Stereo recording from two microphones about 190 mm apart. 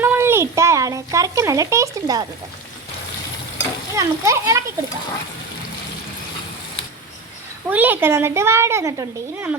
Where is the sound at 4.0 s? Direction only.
15° right (ahead or behind).